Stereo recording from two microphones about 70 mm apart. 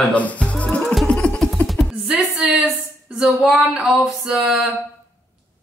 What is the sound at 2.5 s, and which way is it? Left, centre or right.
Speech, centre.